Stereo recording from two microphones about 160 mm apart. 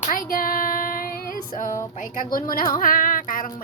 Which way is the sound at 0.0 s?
60° left (ahead or behind).